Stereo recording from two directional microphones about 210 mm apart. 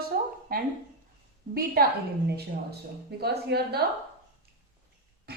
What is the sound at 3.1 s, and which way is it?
Speech, 50° right (ahead or behind).